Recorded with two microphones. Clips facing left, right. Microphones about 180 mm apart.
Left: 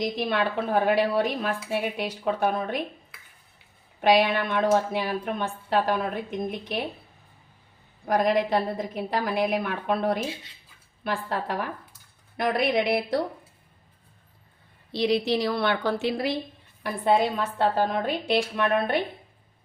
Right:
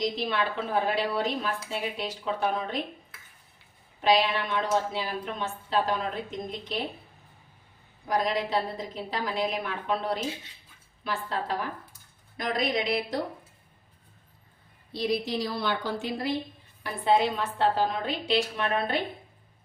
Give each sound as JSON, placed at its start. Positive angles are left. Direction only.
{"t": 0.0, "sound": "a woman's voice", "side_deg": 55}
{"t": 4.0, "sound": "a woman's voice", "side_deg": 55}
{"t": 8.0, "sound": "a woman's voice", "side_deg": 55}
{"t": 14.9, "sound": "a woman's voice", "side_deg": 85}
{"t": 16.8, "sound": "a woman's voice", "side_deg": 45}